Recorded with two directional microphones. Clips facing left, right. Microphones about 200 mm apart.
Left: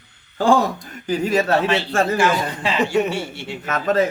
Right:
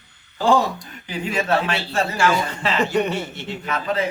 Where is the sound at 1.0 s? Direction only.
40° left (ahead or behind).